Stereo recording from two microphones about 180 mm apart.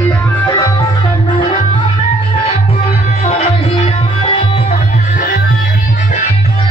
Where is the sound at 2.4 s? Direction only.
35° left (ahead or behind).